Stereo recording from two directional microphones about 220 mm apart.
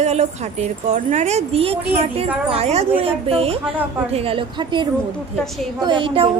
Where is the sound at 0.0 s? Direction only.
30° right (ahead or behind).